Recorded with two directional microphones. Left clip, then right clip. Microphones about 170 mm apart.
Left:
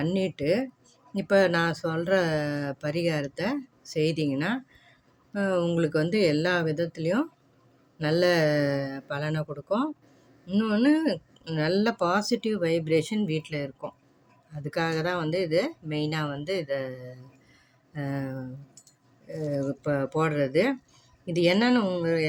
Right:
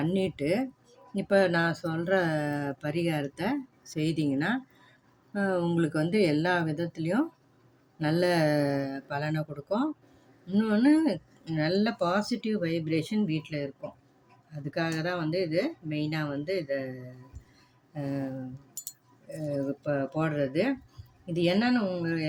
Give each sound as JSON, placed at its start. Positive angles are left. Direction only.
{"t": 0.0, "sound": "speech", "side_deg": 25}